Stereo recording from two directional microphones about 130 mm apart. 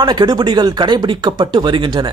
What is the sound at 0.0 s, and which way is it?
A man's voice, 35° right (ahead or behind).